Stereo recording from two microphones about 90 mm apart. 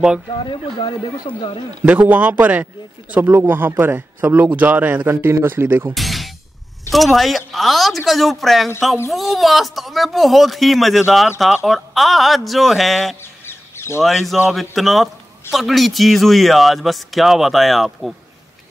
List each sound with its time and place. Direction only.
0.4 s speech: 70° left (ahead or behind)
1.9 s a man's voice: 20° right (ahead or behind)
5.1 s a man's voice: 30° right (ahead or behind)
5.9 s music: centre (ahead or behind)
6.9 s speech: centre (ahead or behind)
13.2 s bird: 25° left (ahead or behind)
14.0 s speech: centre (ahead or behind)